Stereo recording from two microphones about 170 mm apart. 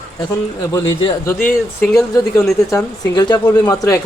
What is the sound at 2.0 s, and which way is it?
Speech, 20° left (ahead or behind).